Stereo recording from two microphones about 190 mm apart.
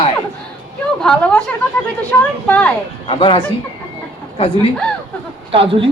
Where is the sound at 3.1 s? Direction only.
30° left (ahead or behind).